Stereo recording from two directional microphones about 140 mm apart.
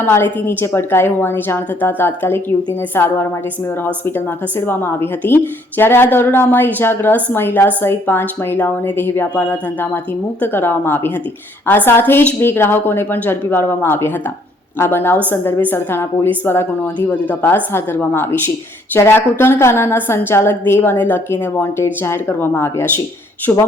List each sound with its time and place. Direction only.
0.0 s speech: 15° left (ahead or behind)